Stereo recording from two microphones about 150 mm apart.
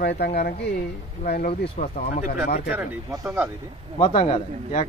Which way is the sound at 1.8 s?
70° left (ahead or behind).